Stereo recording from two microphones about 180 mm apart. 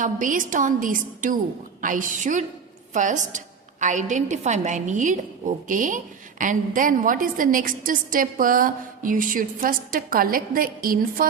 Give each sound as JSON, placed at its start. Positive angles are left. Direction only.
{"t": 0.0, "sound": "a woman's voice", "side_deg": -45}